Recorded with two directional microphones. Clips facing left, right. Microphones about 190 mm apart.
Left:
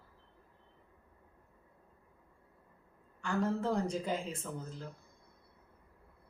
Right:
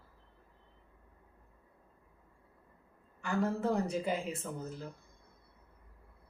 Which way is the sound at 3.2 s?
10° right (ahead or behind).